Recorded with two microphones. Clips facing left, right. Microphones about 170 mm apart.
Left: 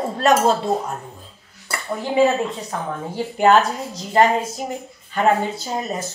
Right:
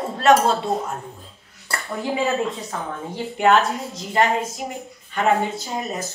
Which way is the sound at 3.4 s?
Centre (ahead or behind).